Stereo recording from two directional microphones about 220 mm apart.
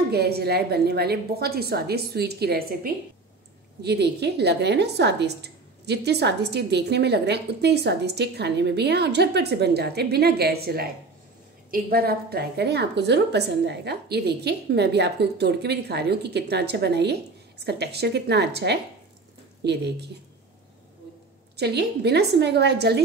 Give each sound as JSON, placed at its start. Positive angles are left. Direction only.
{"t": 0.1, "sound": "a woman's voice", "side_deg": -45}
{"t": 21.5, "sound": "a woman's voice", "side_deg": -50}